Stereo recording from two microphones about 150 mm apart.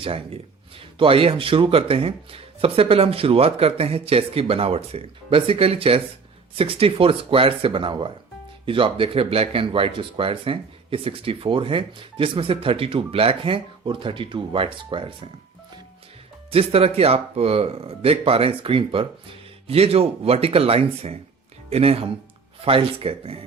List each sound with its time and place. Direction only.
0.0 s speech: 40° right (ahead or behind)
16.5 s speech: 40° right (ahead or behind)